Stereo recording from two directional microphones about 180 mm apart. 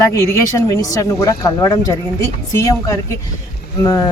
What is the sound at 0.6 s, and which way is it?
Speech, 20° left (ahead or behind).